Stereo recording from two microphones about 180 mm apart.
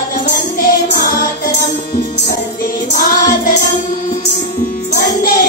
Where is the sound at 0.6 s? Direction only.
55° left (ahead or behind).